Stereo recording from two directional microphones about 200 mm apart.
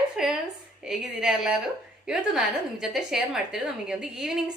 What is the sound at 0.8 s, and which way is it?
Speech, 5° right (ahead or behind).